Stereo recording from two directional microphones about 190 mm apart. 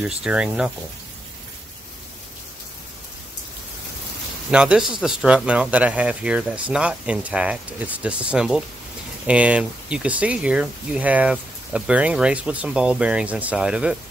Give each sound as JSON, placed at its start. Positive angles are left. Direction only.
{"t": 0.0, "sound": "speech", "side_deg": -5}
{"t": 4.5, "sound": "speech", "side_deg": -5}